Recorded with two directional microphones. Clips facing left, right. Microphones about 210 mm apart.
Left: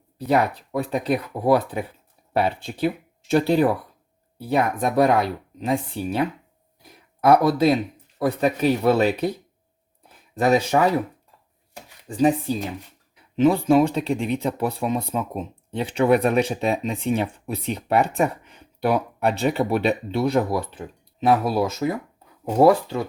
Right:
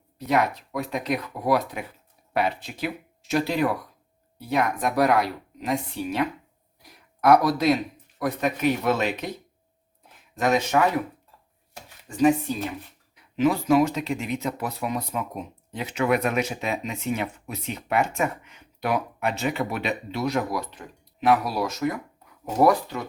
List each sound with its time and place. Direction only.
0.3 s speech: 30° left (ahead or behind)
10.3 s speech: 35° left (ahead or behind)
12.0 s speech: 35° left (ahead or behind)